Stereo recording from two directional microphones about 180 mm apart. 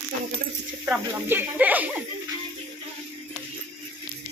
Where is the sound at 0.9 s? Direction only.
10° right (ahead or behind).